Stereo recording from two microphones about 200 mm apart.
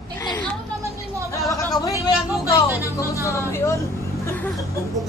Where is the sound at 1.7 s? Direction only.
20° left (ahead or behind).